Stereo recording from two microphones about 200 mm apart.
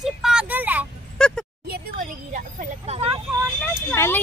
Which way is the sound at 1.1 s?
5° left (ahead or behind).